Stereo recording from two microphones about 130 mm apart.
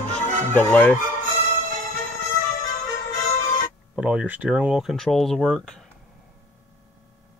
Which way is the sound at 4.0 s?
10° right (ahead or behind).